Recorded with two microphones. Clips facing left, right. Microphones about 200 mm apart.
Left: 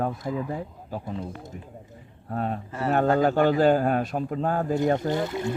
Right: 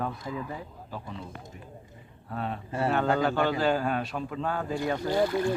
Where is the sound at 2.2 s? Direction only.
45° left (ahead or behind).